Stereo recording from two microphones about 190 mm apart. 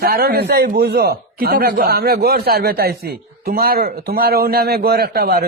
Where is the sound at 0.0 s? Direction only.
55° right (ahead or behind).